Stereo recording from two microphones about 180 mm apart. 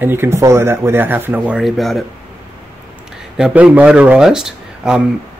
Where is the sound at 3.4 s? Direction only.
5° right (ahead or behind).